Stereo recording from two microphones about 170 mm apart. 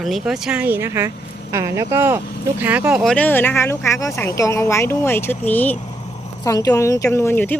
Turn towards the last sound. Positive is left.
turn(degrees=10)  # may be behind; listen again after turning